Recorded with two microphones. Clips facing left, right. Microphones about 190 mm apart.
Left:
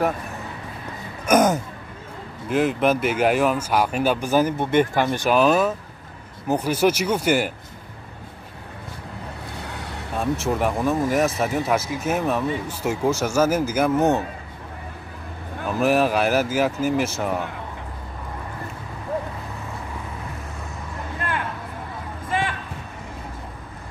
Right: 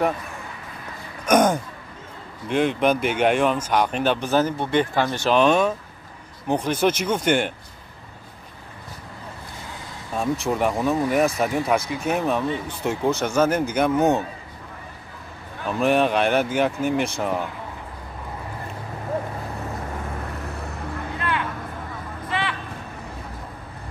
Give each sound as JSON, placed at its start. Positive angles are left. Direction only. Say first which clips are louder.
{"t": 1.2, "sound": "throat clearing", "louder": "even", "side_deg": 5}
{"t": 2.4, "sound": "speech", "louder": "even", "side_deg": 5}
{"t": 9.7, "sound": "vehicle", "louder": "left 4 dB", "side_deg": 70}
{"t": 10.1, "sound": "speech", "louder": "even", "side_deg": 0}
{"t": 15.7, "sound": "speech", "louder": "even", "side_deg": 5}
{"t": 22.3, "sound": "a sound", "louder": "left 2 dB", "side_deg": 45}